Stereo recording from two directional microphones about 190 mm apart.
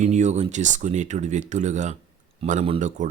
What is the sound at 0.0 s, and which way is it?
Speech, 40° right (ahead or behind).